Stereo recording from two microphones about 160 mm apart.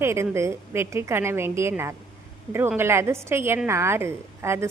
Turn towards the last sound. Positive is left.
turn(degrees=-15)  # may be behind; listen again after turning